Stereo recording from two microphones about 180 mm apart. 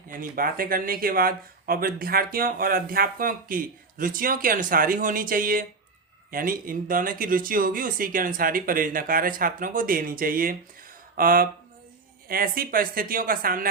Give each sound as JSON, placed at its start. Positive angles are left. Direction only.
{"t": 0.1, "sound": "speech", "side_deg": -50}